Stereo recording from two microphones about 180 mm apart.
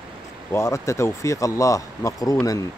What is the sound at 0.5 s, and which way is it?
Speech, 15° left (ahead or behind).